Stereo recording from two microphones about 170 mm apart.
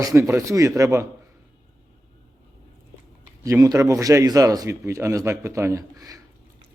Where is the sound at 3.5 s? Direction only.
20° right (ahead or behind).